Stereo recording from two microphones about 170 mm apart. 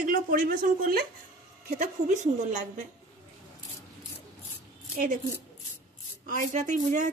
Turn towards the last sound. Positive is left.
turn(degrees=-50)  # may be behind; listen again after turning